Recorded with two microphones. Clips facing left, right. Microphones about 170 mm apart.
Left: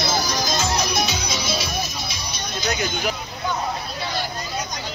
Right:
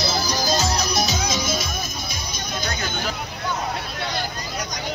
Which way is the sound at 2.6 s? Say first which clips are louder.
Left 5 dB; 15° left (ahead or behind).